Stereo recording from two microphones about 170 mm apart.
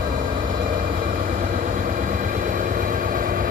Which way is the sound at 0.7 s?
55° right (ahead or behind).